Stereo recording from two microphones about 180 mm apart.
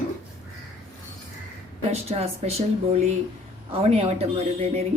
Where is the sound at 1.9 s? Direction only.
35° right (ahead or behind).